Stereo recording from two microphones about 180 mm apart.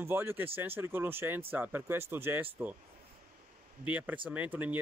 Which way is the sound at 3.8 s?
10° right (ahead or behind).